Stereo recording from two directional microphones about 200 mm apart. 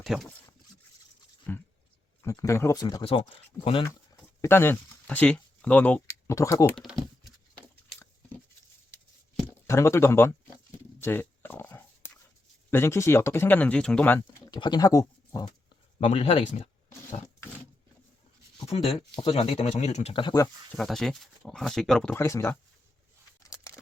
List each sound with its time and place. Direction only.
0.0 s speech: centre (ahead or behind)
2.2 s speech: 15° left (ahead or behind)
3.8 s speech: 15° left (ahead or behind)
6.7 s computer keyboard: centre (ahead or behind)
9.5 s speech: 15° left (ahead or behind)
11.0 s dog: 10° left (ahead or behind)
12.7 s speech: 10° left (ahead or behind)
14.2 s speech: 20° left (ahead or behind)
16.0 s speech: 30° left (ahead or behind)
18.7 s speech: 25° left (ahead or behind)
20.7 s speech: centre (ahead or behind)
22.1 s speech: 15° left (ahead or behind)
23.5 s a sound: 15° left (ahead or behind)